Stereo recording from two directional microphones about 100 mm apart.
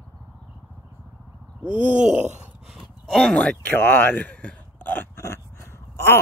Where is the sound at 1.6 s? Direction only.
15° right (ahead or behind).